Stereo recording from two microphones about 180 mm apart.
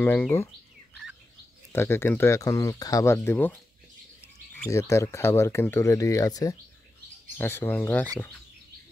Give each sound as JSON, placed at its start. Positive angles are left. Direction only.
{"t": 0.0, "sound": "speech", "side_deg": 10}
{"t": 1.7, "sound": "speech", "side_deg": 15}